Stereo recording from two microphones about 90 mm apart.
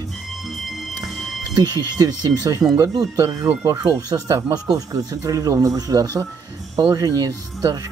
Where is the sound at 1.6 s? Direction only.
45° right (ahead or behind).